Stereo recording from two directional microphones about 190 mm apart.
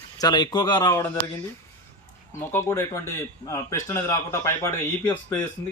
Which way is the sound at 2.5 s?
15° left (ahead or behind).